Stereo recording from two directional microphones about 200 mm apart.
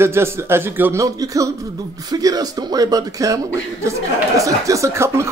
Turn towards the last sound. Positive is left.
turn(degrees=-15)  # may be behind; listen again after turning